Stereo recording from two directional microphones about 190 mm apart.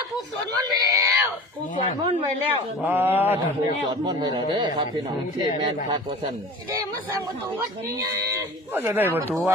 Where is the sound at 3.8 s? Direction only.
25° right (ahead or behind).